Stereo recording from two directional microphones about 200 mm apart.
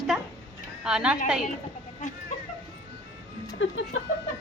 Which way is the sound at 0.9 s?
5° right (ahead or behind).